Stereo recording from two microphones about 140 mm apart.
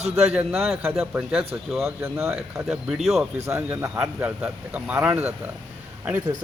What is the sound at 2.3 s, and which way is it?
A man's voice, 5° right (ahead or behind).